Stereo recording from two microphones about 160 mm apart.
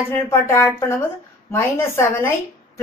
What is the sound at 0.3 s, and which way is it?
A woman's voice, 15° left (ahead or behind).